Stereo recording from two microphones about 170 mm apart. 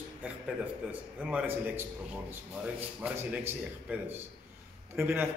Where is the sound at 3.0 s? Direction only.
10° right (ahead or behind).